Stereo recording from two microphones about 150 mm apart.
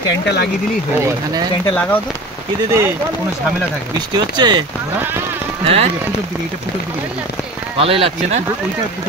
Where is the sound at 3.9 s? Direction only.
30° right (ahead or behind).